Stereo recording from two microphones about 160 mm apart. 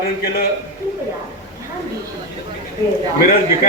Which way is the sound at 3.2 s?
70° left (ahead or behind).